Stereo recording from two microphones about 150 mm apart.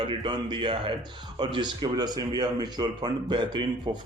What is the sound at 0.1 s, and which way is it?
A man's voice, 30° right (ahead or behind).